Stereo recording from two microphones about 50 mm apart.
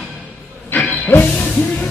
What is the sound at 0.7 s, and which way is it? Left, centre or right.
Train, left.